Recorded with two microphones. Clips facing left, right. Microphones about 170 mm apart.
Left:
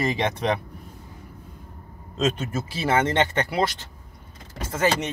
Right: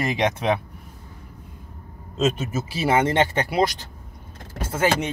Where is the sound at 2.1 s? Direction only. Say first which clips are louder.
Right 2 dB; 5° right (ahead or behind).